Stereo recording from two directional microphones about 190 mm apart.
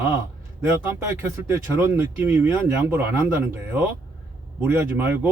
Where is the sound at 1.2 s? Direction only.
10° right (ahead or behind).